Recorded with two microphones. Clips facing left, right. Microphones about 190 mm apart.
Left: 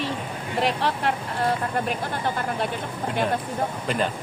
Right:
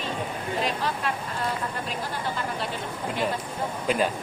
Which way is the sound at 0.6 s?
70° left (ahead or behind).